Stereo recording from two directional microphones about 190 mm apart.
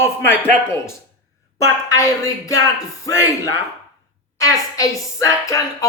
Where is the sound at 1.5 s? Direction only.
15° left (ahead or behind).